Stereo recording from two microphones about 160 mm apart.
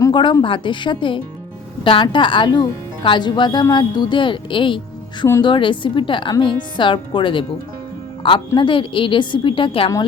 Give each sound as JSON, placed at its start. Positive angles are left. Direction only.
{"t": 0.1, "sound": "a woman's voice", "side_deg": 30}
{"t": 8.5, "sound": "speech", "side_deg": 30}